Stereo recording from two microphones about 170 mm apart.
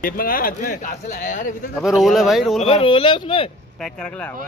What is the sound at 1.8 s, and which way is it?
Speech, centre (ahead or behind).